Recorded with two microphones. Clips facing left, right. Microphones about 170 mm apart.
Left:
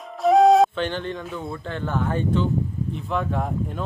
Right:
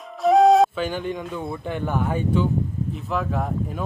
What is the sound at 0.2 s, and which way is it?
Speech, centre (ahead or behind).